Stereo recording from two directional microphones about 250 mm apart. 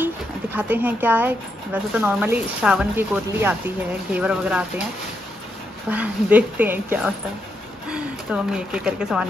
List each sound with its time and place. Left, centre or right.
0.0 s speech: centre
5.9 s speech: centre